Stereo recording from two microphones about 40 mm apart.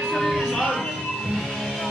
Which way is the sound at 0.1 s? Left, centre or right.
Centre.